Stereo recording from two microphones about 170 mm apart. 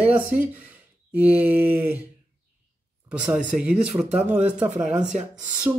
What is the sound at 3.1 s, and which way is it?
Speech, 5° right (ahead or behind).